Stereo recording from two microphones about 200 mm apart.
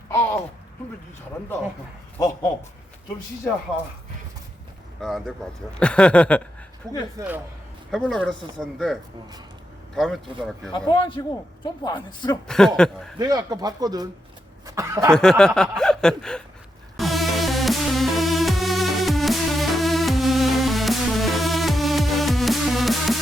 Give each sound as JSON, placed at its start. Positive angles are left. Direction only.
{"t": 0.1, "sound": "a sound", "side_deg": 15}
{"t": 4.9, "sound": "speech", "side_deg": 0}
{"t": 7.2, "sound": "speech", "side_deg": -10}
{"t": 7.9, "sound": "speech", "side_deg": 0}
{"t": 10.8, "sound": "a woman's voice", "side_deg": 25}
{"t": 12.5, "sound": "speech", "side_deg": 5}
{"t": 13.1, "sound": "speech", "side_deg": -20}
{"t": 15.1, "sound": "speech", "side_deg": 5}
{"t": 17.0, "sound": "music", "side_deg": 0}